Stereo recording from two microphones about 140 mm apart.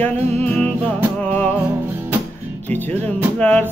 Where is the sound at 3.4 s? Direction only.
10° left (ahead or behind).